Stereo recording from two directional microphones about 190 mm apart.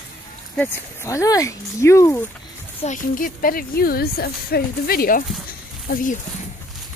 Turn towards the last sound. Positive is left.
turn(degrees=45)  # may be behind; listen again after turning